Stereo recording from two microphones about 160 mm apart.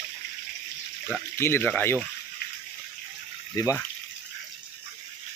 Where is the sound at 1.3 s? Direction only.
15° left (ahead or behind).